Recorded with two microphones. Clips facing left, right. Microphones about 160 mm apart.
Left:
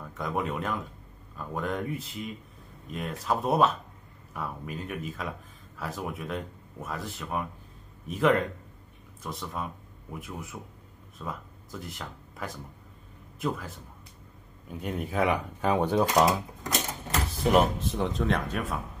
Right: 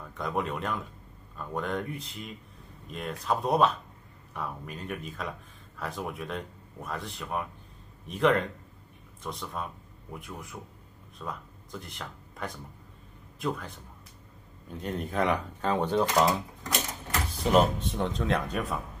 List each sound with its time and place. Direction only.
0.2 s speech: centre (ahead or behind)
14.8 s speech: 10° left (ahead or behind)
17.4 s speech: 5° left (ahead or behind)